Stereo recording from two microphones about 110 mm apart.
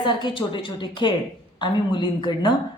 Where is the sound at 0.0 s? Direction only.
45° left (ahead or behind).